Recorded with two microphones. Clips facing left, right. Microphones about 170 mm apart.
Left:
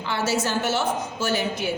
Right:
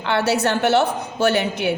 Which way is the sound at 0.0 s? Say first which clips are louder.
Right 5 dB; 65° right (ahead or behind).